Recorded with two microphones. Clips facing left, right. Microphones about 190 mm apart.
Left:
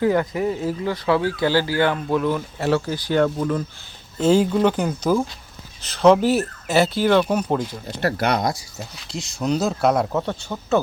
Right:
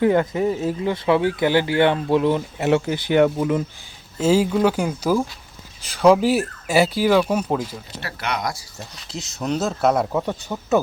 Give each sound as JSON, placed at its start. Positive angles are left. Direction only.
{"t": 0.0, "sound": "speech", "side_deg": -25}
{"t": 8.0, "sound": "speech", "side_deg": 40}
{"t": 8.8, "sound": "speech", "side_deg": 0}